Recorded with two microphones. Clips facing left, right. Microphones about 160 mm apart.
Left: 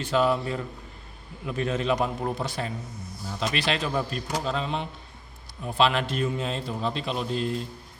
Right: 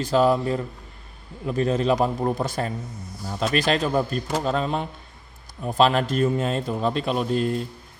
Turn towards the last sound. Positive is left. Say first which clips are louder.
# right 5 dB
turn(degrees=-50)  # may be behind; listen again after turning